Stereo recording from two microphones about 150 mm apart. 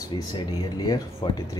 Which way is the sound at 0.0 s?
30° left (ahead or behind).